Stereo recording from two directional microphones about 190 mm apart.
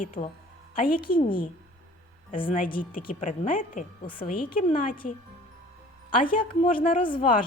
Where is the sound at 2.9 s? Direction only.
45° left (ahead or behind).